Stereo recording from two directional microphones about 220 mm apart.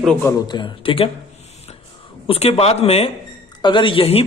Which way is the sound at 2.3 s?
30° left (ahead or behind).